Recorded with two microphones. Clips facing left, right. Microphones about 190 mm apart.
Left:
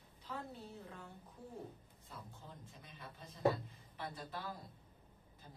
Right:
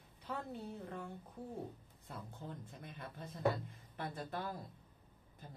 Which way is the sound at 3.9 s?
50° right (ahead or behind).